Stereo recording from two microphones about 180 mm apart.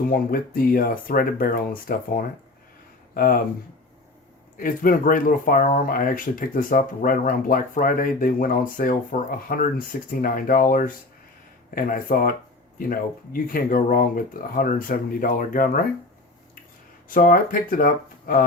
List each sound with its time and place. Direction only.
0.1 s speech: 55° left (ahead or behind)
4.5 s speech: 50° left (ahead or behind)
17.1 s speech: 50° left (ahead or behind)